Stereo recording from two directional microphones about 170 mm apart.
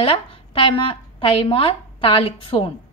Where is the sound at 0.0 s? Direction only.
30° left (ahead or behind).